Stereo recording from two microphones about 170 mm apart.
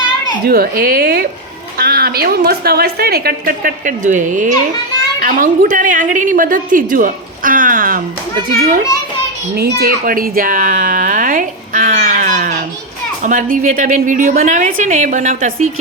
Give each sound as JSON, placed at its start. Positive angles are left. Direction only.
{"t": 0.4, "sound": "a woman's voice", "side_deg": -60}
{"t": 9.6, "sound": "a woman's voice", "side_deg": -70}